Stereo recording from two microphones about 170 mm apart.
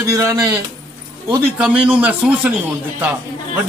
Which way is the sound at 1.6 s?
10° right (ahead or behind).